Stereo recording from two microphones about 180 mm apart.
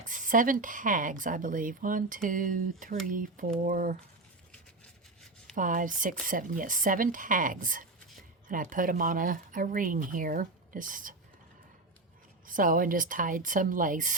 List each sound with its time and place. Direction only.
0.0 s speech: 45° right (ahead or behind)
5.5 s speech: 45° right (ahead or behind)
12.5 s speech: 50° right (ahead or behind)